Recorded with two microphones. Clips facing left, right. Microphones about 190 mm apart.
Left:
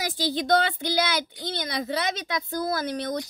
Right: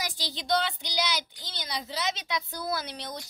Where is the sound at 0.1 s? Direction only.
55° left (ahead or behind).